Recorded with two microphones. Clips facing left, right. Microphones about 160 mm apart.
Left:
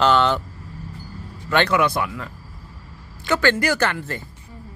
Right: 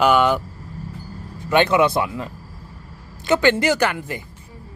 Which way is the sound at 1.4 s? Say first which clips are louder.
Right 3 dB; 20° right (ahead or behind).